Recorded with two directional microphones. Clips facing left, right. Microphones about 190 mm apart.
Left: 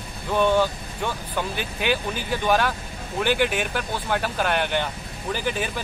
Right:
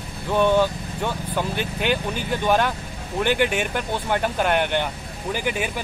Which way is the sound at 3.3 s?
55° right (ahead or behind).